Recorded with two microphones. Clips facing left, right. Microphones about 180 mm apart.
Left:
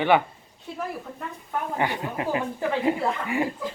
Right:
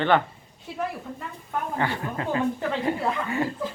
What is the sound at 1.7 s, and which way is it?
Speech, 15° left (ahead or behind).